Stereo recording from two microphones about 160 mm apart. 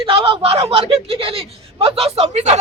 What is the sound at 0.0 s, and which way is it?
Speech, 35° right (ahead or behind).